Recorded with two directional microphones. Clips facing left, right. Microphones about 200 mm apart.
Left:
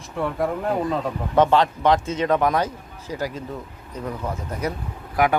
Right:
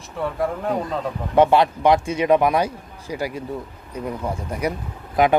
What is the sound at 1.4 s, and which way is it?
A man's voice, 10° right (ahead or behind).